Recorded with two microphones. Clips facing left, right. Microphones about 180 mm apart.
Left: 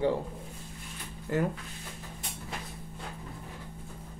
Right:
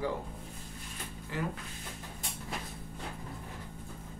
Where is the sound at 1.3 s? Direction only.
50° left (ahead or behind).